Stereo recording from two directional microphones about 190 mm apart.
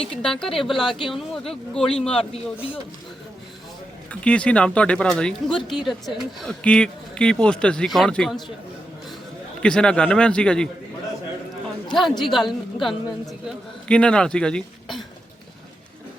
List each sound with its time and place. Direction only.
0.0 s speech: 5° left (ahead or behind)
4.1 s speech: 5° left (ahead or behind)
9.6 s speech: 5° left (ahead or behind)
11.9 s a man's voice: centre (ahead or behind)